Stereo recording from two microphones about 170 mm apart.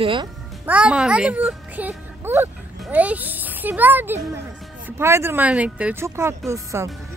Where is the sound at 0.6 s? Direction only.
5° right (ahead or behind).